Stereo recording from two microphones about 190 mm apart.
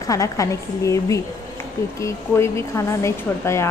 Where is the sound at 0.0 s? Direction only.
15° left (ahead or behind).